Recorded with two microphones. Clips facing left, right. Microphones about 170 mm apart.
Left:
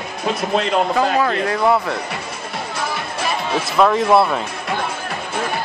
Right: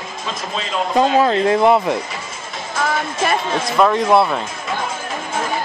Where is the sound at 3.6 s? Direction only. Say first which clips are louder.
Left 1 dB; centre (ahead or behind).